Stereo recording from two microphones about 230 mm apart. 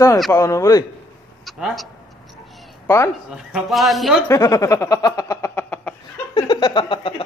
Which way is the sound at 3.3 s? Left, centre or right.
Centre.